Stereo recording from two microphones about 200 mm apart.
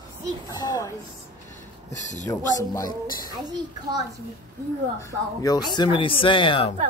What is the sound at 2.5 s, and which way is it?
Speech, 15° left (ahead or behind).